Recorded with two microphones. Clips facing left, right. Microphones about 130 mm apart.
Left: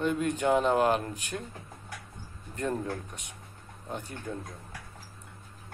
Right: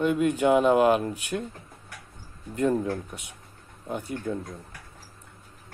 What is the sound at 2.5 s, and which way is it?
Speech, 10° right (ahead or behind).